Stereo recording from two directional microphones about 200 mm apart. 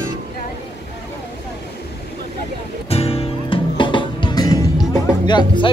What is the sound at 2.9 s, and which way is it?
Music, 30° left (ahead or behind).